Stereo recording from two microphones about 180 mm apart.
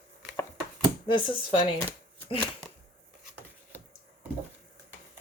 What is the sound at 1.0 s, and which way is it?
Speech, 25° left (ahead or behind).